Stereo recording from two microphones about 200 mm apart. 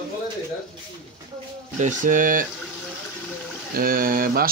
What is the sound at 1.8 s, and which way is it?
Speech, 40° right (ahead or behind).